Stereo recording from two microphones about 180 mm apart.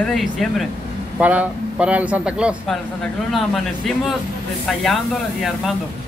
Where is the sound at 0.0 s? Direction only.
Centre (ahead or behind).